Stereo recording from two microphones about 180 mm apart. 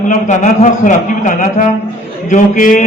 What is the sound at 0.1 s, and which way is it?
A man's voice, 45° left (ahead or behind).